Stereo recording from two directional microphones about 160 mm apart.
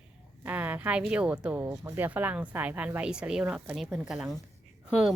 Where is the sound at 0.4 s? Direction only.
10° right (ahead or behind).